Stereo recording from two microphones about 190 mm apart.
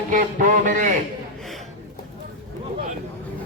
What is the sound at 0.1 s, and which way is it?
Speech, 45° right (ahead or behind).